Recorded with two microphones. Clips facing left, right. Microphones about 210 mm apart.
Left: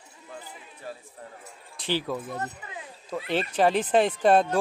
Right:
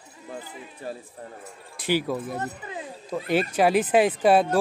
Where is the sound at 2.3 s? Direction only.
30° right (ahead or behind).